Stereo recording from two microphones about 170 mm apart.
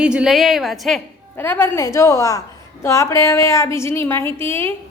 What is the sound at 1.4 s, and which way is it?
A woman's voice, 15° left (ahead or behind).